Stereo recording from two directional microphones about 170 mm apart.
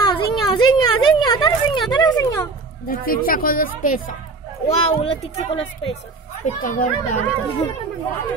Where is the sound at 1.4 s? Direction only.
30° left (ahead or behind).